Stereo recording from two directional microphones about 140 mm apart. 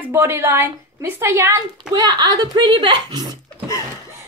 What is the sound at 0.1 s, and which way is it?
Speech, 20° right (ahead or behind).